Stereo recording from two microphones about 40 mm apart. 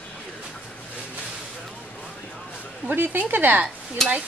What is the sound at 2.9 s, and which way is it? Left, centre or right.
Speech, right.